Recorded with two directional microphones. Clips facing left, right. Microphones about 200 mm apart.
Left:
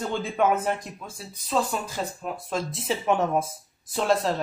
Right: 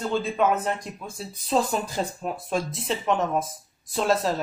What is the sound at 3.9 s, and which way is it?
Speech, centre (ahead or behind).